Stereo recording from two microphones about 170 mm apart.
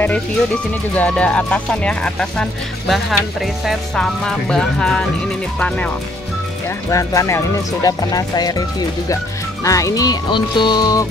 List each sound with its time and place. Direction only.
0.9 s speech: 10° left (ahead or behind)
6.9 s speech: 20° left (ahead or behind)